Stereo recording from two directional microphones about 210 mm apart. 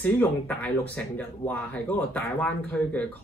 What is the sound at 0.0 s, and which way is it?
Speech, 5° left (ahead or behind).